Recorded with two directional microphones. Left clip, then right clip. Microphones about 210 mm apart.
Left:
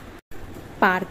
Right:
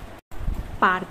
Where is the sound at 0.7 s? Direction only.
15° left (ahead or behind).